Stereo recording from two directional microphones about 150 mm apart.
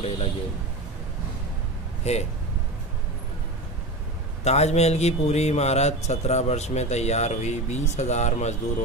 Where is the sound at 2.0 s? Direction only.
45° left (ahead or behind).